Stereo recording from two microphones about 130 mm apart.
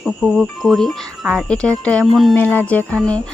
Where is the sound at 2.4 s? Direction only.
15° left (ahead or behind).